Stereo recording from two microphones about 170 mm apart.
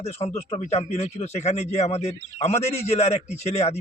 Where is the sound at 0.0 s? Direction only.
35° left (ahead or behind).